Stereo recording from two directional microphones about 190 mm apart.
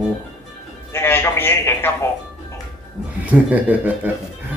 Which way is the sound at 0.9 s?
10° left (ahead or behind).